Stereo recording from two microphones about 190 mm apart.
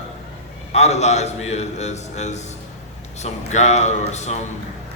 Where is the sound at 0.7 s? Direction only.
35° left (ahead or behind).